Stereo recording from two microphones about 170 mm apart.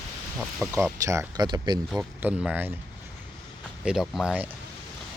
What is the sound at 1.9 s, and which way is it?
Speech, 5° right (ahead or behind).